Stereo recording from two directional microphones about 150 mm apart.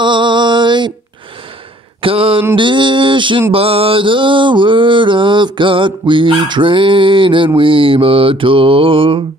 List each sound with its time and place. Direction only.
0.0 s mantra: 30° right (ahead or behind)
2.0 s a sound: 35° right (ahead or behind)
2.5 s mantra: 35° right (ahead or behind)